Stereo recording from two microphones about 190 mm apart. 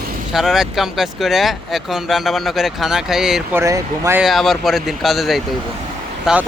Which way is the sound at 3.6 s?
15° right (ahead or behind).